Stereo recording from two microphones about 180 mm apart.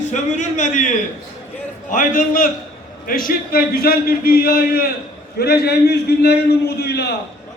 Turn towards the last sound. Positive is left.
turn(degrees=65)  # may be behind; listen again after turning